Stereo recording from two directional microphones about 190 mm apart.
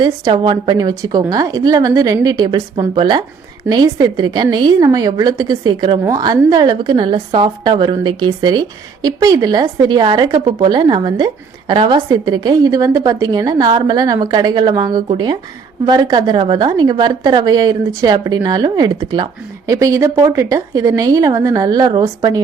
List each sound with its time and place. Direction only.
0.0 s a woman's voice: 25° right (ahead or behind)